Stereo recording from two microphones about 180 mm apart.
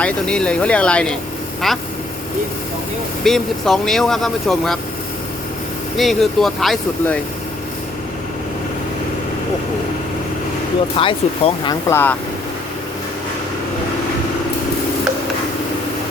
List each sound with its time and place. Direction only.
0.0 s speech: 5° left (ahead or behind)
3.2 s speech: centre (ahead or behind)
6.0 s speech: centre (ahead or behind)
10.9 s speech: 30° left (ahead or behind)
11.9 s speech: 10° left (ahead or behind)